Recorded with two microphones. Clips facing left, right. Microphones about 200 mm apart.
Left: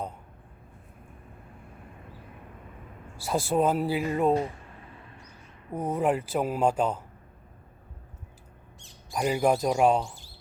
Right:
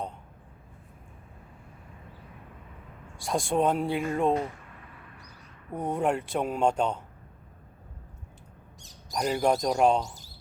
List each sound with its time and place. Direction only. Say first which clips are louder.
3.2 s speech: left 1 dB; 5° left (ahead or behind)
5.7 s speech: left 1 dB; centre (ahead or behind)
8.8 s a sound: right 1 dB; 40° right (ahead or behind)
9.1 s speech: left 1 dB; 5° left (ahead or behind)